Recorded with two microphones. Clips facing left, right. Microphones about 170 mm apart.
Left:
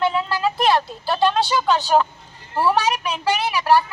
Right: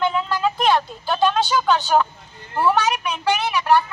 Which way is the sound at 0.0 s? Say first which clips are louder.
Even; 5° left (ahead or behind).